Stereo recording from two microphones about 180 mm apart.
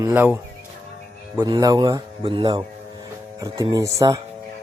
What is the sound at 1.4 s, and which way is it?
A man's voice, 20° right (ahead or behind).